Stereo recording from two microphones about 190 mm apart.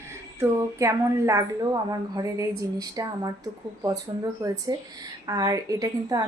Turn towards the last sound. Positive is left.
turn(degrees=-20)  # may be behind; listen again after turning